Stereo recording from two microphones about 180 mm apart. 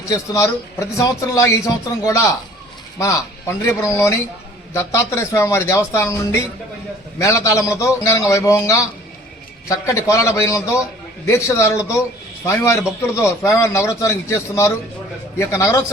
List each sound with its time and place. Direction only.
0.1 s a man's voice: 15° left (ahead or behind)